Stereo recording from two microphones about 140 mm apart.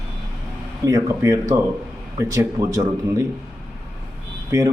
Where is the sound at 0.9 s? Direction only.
20° right (ahead or behind).